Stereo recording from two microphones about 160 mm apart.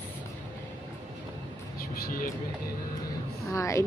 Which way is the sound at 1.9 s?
65° left (ahead or behind).